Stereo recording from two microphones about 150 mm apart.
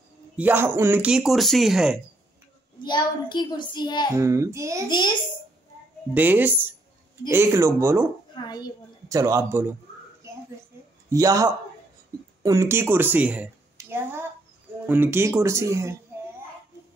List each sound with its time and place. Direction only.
0.4 s speech: 15° right (ahead or behind)
2.8 s a child's voice: 30° left (ahead or behind)
4.1 s speech: 20° right (ahead or behind)
4.8 s a child's voice: 30° left (ahead or behind)
6.1 s speech: 10° right (ahead or behind)
8.4 s a child's voice: 30° left (ahead or behind)
9.1 s speech: 20° right (ahead or behind)
11.1 s a woman's voice: 25° right (ahead or behind)